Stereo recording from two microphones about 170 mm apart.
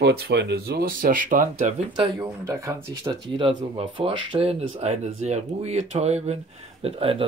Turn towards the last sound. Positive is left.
turn(degrees=-35)  # may be behind; listen again after turning